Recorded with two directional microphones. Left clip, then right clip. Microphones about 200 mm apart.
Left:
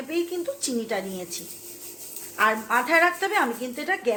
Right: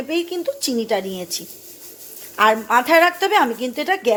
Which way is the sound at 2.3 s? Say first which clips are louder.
Right 7 dB; 45° right (ahead or behind).